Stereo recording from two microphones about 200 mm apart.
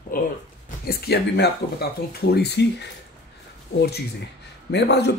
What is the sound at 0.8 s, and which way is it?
Speech, 55° left (ahead or behind).